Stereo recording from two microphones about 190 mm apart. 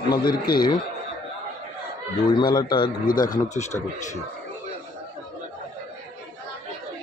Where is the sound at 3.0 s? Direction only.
45° left (ahead or behind).